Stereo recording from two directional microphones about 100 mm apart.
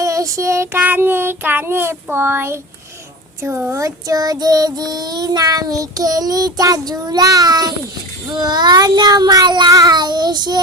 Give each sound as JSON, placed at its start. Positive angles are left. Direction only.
{"t": 0.0, "sound": "child singing", "side_deg": -35}
{"t": 0.8, "sound": "a child's voice", "side_deg": -20}
{"t": 3.7, "sound": "child singing", "side_deg": -35}